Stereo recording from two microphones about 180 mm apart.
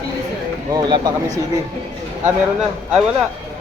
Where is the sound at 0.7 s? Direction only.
25° right (ahead or behind).